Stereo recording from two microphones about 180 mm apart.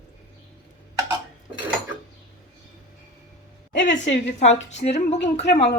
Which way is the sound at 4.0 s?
85° left.